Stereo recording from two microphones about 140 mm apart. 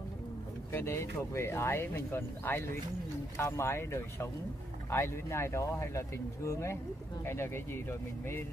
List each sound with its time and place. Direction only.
0.7 s speech: 20° left (ahead or behind)